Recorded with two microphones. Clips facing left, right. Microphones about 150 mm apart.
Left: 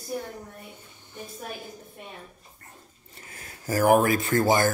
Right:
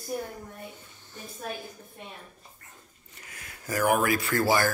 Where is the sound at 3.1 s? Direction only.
30° left (ahead or behind).